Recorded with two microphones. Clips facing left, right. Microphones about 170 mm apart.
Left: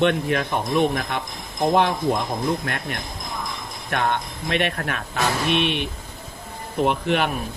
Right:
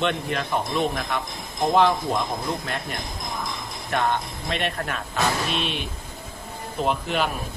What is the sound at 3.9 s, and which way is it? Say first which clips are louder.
Speech: even; 60° left (ahead or behind).